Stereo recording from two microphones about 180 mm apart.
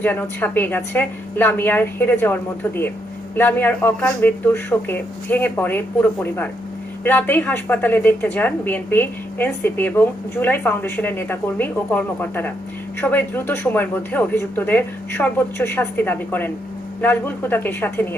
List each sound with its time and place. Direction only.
0.0 s speech: 10° left (ahead or behind)